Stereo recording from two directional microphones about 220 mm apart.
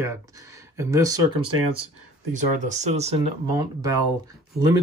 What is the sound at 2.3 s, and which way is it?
Speech, 30° right (ahead or behind).